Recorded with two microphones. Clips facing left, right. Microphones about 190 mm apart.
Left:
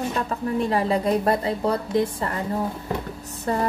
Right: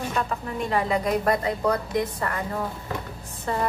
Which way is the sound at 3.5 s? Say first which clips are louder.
Left 3 dB; 40° left (ahead or behind).